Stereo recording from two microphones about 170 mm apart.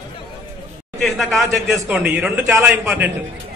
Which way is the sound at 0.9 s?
Centre (ahead or behind).